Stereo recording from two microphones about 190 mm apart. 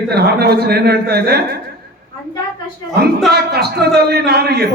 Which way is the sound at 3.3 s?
55° right (ahead or behind).